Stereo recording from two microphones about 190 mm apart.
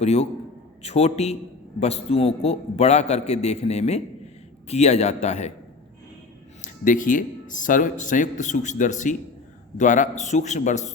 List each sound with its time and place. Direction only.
0.0 s a man's voice: 35° left (ahead or behind)
6.6 s a man's voice: 45° left (ahead or behind)